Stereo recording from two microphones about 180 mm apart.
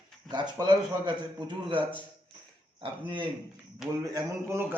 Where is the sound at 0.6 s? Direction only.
25° right (ahead or behind).